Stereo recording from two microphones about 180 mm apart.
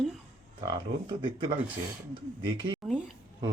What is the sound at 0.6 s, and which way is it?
Speech, 25° right (ahead or behind).